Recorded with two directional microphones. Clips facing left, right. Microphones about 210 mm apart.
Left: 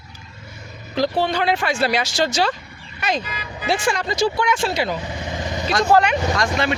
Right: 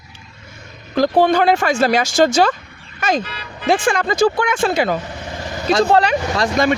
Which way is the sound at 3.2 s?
10° left (ahead or behind).